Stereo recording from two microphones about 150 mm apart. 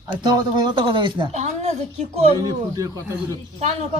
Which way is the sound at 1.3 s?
45° right (ahead or behind).